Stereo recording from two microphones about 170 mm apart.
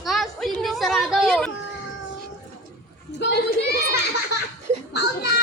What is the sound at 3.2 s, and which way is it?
Speech, 75° left (ahead or behind).